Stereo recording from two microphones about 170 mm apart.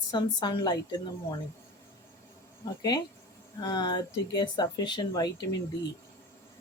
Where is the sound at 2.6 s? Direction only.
20° left (ahead or behind).